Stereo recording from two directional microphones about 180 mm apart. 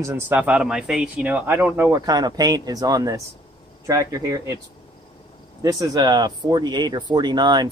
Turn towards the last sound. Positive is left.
turn(degrees=-25)  # may be behind; listen again after turning